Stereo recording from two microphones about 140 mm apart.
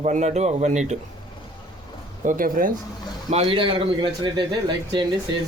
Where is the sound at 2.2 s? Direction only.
75° right (ahead or behind).